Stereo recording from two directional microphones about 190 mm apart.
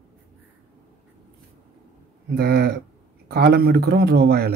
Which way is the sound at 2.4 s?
55° right (ahead or behind).